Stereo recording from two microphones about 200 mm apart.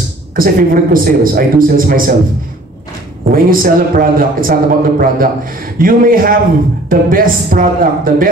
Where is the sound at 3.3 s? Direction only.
45° right (ahead or behind).